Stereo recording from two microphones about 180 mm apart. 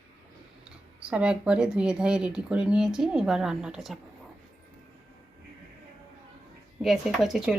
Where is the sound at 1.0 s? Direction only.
5° right (ahead or behind).